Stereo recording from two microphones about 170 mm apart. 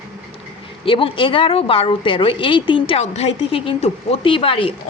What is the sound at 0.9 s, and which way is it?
A woman's voice, 30° left (ahead or behind).